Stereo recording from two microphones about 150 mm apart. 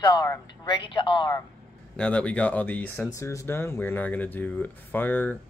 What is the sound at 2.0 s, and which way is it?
Speech, 5° left (ahead or behind).